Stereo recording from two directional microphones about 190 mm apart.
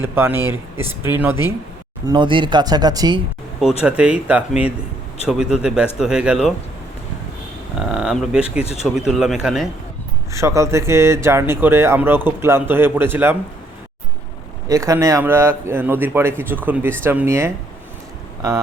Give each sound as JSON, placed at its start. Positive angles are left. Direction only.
{"t": 0.0, "sound": "speech", "side_deg": -10}
{"t": 2.0, "sound": "speech", "side_deg": -25}
{"t": 3.8, "sound": "speech", "side_deg": -5}
{"t": 7.8, "sound": "speech", "side_deg": -5}
{"t": 8.6, "sound": "speech", "side_deg": 35}
{"t": 9.0, "sound": "speech", "side_deg": 0}
{"t": 10.3, "sound": "speech", "side_deg": -15}
{"t": 14.7, "sound": "speech", "side_deg": -15}